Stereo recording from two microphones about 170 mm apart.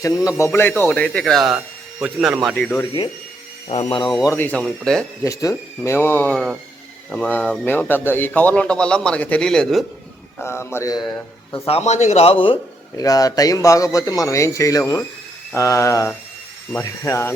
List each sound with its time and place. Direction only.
0.0 s a man's voice: 20° left (ahead or behind)
3.7 s speech: 35° left (ahead or behind)
4.2 s a man's voice: 15° left (ahead or behind)
5.2 s a man's voice: 20° left (ahead or behind); by 9.8 s 5° left (ahead or behind)
10.3 s a man's voice: 15° left (ahead or behind)
11.5 s speech: 35° left (ahead or behind)
13.0 s a man's voice: 20° left (ahead or behind)